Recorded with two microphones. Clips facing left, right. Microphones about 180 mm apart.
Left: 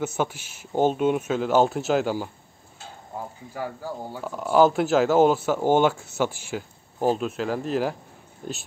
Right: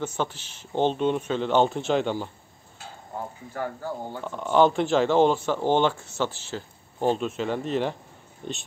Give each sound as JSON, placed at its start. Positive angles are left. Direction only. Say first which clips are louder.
{"t": 0.0, "sound": "speech", "louder": "left 2 dB", "side_deg": 10}
{"t": 3.5, "sound": "speech", "louder": "right 1 dB", "side_deg": 10}